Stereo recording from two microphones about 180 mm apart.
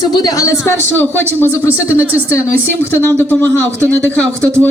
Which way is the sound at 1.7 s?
10° right (ahead or behind).